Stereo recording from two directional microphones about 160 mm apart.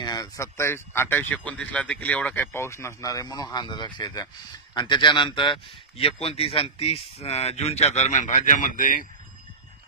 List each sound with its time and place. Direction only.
0.0 s a man's voice: 25° left (ahead or behind); by 9.0 s 60° left (ahead or behind)